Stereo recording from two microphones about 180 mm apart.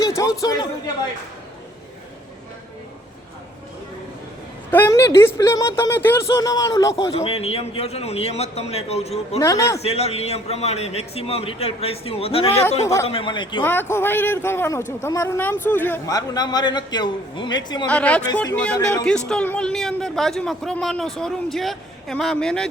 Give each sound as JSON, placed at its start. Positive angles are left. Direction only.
{"t": 0.0, "sound": "a sound", "side_deg": 20}
{"t": 0.4, "sound": "speech", "side_deg": 20}
{"t": 4.7, "sound": "speech", "side_deg": 15}
{"t": 7.2, "sound": "a man's voice", "side_deg": 35}
{"t": 9.4, "sound": "speech", "side_deg": 15}
{"t": 9.8, "sound": "a man's voice", "side_deg": 35}
{"t": 12.8, "sound": "speech", "side_deg": 15}
{"t": 13.1, "sound": "speech", "side_deg": 30}
{"t": 13.6, "sound": "speech", "side_deg": 10}
{"t": 17.8, "sound": "a man's voice", "side_deg": 5}